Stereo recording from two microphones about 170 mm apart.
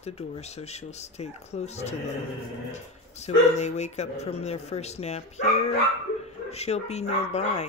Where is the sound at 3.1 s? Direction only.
40° left (ahead or behind).